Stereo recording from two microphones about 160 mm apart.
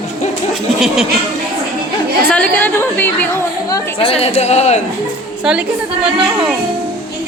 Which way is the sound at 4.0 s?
35° left (ahead or behind).